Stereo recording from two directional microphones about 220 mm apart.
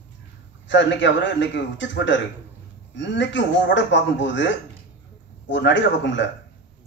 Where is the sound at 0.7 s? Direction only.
55° left (ahead or behind).